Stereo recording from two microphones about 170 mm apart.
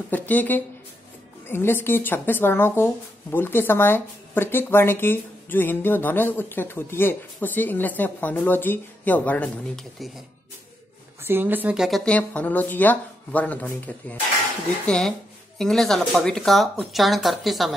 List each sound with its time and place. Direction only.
0.1 s speech: 10° left (ahead or behind)
11.2 s speech: 10° right (ahead or behind)